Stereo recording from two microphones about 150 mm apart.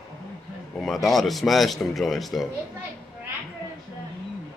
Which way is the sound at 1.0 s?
Centre (ahead or behind).